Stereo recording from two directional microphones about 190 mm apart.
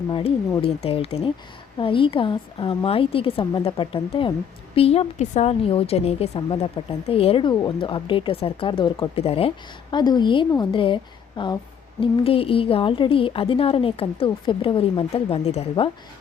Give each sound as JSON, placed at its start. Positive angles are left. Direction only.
{"t": 0.1, "sound": "a woman's voice", "side_deg": 25}